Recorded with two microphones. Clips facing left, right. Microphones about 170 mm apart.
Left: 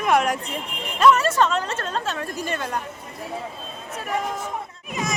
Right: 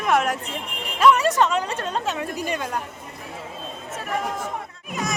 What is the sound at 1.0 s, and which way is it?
A woman's voice, 15° right (ahead or behind).